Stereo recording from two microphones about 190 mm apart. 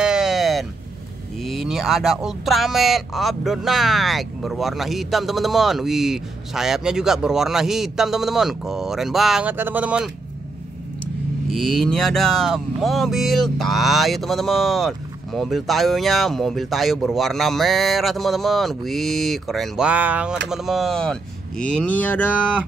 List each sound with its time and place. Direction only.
0.0 s a sound: 5° right (ahead or behind)
1.4 s speech: centre (ahead or behind)
11.5 s speech: centre (ahead or behind)